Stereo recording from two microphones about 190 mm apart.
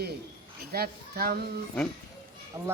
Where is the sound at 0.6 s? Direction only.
55° right (ahead or behind).